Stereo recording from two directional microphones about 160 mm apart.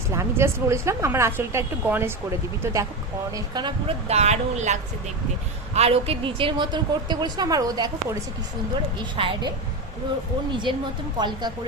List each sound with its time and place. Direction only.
0.1 s a woman's voice: 15° right (ahead or behind)
3.3 s a woman's voice: 25° right (ahead or behind)
4.1 s a woman's voice: 45° right (ahead or behind); by 7.9 s 25° right (ahead or behind)
9.1 s a woman's voice: 35° right (ahead or behind)
10.5 s a woman's voice: 30° right (ahead or behind)